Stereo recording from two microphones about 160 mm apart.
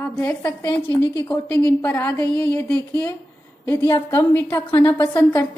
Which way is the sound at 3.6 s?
20° left (ahead or behind).